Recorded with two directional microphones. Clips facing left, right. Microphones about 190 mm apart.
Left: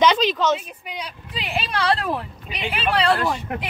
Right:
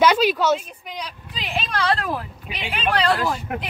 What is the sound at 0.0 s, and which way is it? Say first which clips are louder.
Speech: right 1 dB; 10° right (ahead or behind).